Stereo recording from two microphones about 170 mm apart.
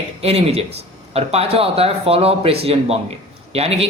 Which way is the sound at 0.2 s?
35° right (ahead or behind).